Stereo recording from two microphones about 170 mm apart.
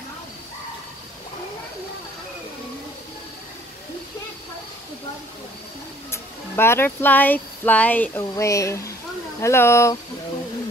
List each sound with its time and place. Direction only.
6.5 s speech: 15° left (ahead or behind)